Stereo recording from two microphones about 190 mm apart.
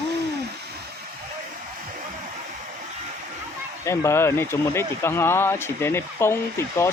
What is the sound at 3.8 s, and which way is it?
Speech, 15° left (ahead or behind).